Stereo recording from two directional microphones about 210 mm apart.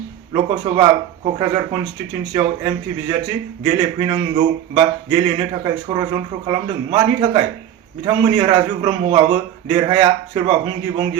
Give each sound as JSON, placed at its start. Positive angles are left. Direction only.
{"t": 0.3, "sound": "a man's voice", "side_deg": -25}